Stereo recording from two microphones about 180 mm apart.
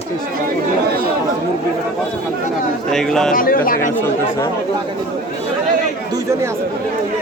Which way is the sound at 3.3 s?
50° left (ahead or behind).